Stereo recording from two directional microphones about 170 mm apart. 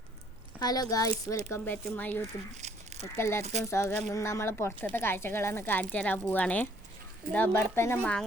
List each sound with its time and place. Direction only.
0.6 s a woman's voice: 20° left (ahead or behind)
2.2 s speech: 40° right (ahead or behind)
3.2 s speech: 15° left (ahead or behind)